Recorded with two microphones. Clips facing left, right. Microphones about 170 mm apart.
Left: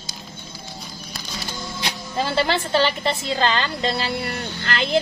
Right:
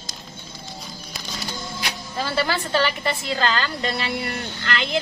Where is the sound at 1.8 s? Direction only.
25° left (ahead or behind).